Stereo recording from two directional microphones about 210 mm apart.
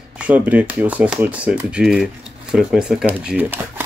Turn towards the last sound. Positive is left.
turn(degrees=-10)  # may be behind; listen again after turning